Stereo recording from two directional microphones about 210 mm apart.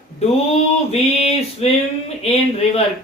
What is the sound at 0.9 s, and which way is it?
Speech, 30° left (ahead or behind).